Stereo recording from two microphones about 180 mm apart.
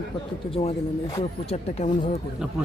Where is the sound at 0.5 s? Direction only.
30° left (ahead or behind).